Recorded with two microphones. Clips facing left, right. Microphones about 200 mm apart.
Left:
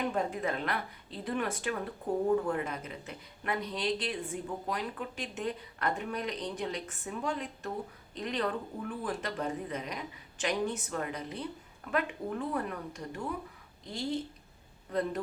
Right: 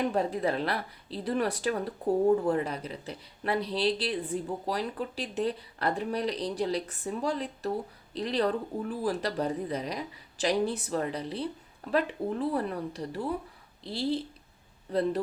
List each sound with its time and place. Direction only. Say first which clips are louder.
0.1 s speech: right 4 dB; 35° right (ahead or behind)